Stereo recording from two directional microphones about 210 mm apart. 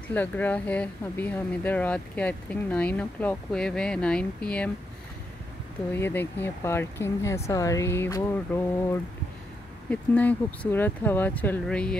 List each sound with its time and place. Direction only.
0.1 s speech: 10° left (ahead or behind)
5.9 s speech: 10° left (ahead or behind)